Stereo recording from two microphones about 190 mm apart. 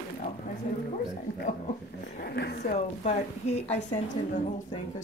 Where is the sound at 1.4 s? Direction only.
40° left (ahead or behind).